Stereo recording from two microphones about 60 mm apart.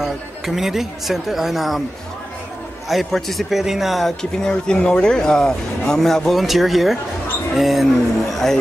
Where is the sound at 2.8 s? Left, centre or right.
Centre.